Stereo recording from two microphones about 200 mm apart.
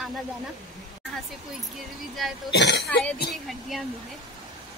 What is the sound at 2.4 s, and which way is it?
Speech, 60° left (ahead or behind).